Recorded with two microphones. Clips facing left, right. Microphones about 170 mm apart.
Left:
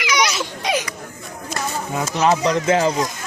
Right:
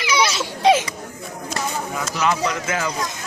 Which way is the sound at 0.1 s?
30° right (ahead or behind).